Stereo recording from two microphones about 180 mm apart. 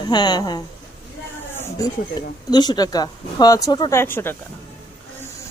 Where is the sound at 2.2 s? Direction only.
20° left (ahead or behind).